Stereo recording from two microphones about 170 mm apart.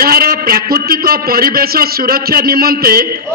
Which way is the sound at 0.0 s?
60° right (ahead or behind).